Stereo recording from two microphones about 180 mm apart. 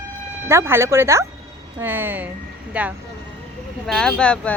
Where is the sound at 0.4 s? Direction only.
15° right (ahead or behind).